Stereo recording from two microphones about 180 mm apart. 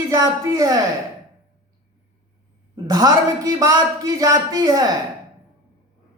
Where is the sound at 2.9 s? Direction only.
20° right (ahead or behind).